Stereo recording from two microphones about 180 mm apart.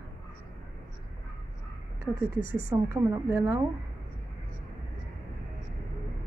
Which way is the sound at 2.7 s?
15° right (ahead or behind).